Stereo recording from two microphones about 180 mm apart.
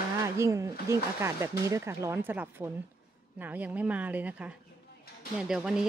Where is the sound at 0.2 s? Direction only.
15° right (ahead or behind).